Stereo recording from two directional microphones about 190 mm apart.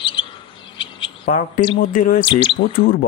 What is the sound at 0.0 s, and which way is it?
Bird, 25° left (ahead or behind).